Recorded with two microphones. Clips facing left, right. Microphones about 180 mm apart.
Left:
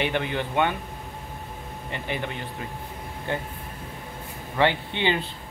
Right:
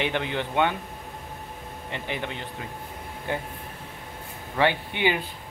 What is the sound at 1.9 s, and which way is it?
Speech, 15° right (ahead or behind).